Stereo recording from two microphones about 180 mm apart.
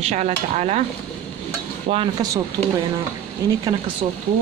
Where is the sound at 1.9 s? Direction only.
35° right (ahead or behind).